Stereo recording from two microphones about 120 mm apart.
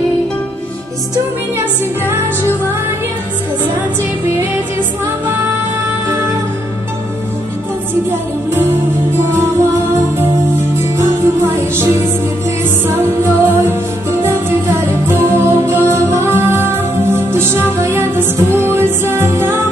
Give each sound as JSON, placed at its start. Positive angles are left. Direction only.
{"t": 10.8, "sound": "music", "side_deg": -20}